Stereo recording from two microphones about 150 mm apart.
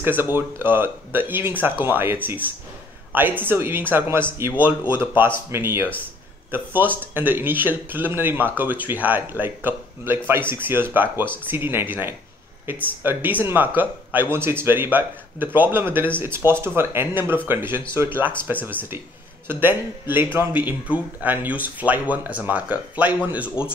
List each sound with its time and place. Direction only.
0.0 s speech: 15° right (ahead or behind)